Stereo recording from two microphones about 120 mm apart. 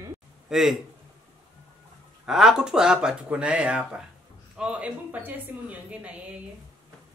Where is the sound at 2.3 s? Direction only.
5° right (ahead or behind).